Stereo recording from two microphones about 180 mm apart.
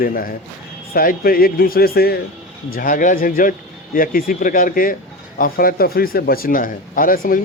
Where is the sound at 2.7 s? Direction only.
50° left (ahead or behind).